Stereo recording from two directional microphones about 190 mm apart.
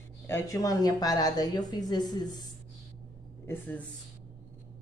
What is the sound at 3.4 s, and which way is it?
Speech, 10° left (ahead or behind).